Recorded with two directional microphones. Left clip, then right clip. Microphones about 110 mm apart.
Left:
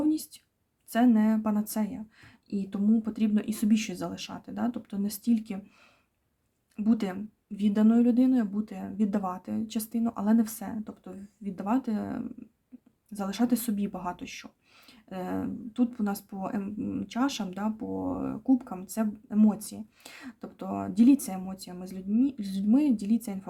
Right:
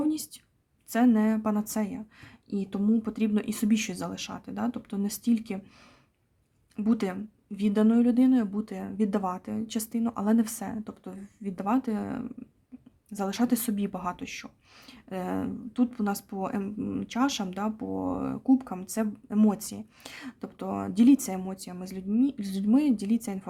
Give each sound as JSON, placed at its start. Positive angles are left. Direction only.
{"t": 0.0, "sound": "a sound", "side_deg": -30}
{"t": 0.9, "sound": "speech", "side_deg": -30}
{"t": 6.7, "sound": "speech", "side_deg": -30}